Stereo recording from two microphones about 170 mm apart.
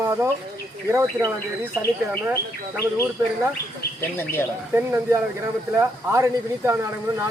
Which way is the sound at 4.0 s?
15° left (ahead or behind).